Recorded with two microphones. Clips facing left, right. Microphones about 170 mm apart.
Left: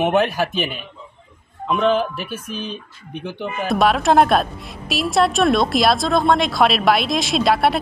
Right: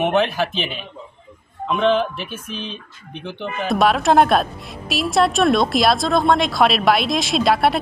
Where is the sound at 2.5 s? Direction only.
45° left (ahead or behind).